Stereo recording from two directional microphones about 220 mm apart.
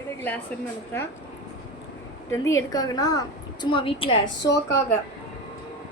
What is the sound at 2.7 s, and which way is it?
A woman's voice, 15° left (ahead or behind).